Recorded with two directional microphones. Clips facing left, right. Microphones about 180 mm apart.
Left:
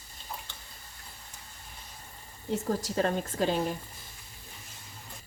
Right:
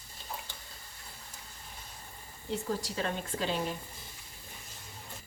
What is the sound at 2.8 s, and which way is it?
Speech, 45° left (ahead or behind).